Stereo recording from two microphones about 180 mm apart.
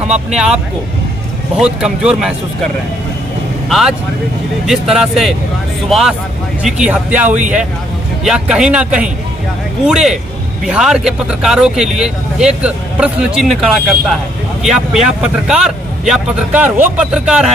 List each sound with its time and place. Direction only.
1.6 s speech: 5° right (ahead or behind)